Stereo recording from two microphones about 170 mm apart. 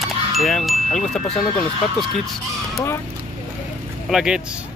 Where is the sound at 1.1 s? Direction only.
40° left (ahead or behind).